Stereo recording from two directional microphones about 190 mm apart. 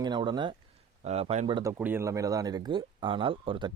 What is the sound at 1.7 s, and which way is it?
Speech, 10° right (ahead or behind).